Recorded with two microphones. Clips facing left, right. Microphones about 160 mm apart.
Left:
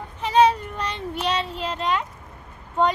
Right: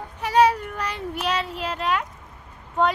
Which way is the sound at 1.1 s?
30° left (ahead or behind).